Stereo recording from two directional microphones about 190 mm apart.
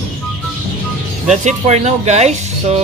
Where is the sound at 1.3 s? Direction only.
35° right (ahead or behind).